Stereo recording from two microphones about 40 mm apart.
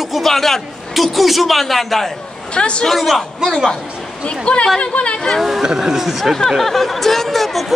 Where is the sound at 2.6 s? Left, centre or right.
Left.